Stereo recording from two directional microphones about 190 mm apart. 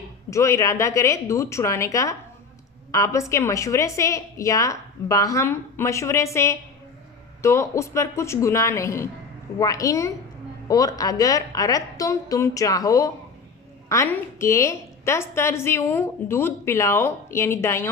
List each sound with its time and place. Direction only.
0.3 s a woman's voice: 15° left (ahead or behind)